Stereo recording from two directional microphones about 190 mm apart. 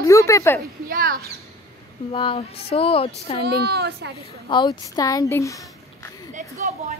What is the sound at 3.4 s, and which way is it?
Speech, 60° right (ahead or behind).